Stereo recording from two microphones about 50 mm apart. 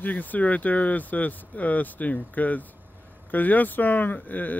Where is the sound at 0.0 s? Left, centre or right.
Left.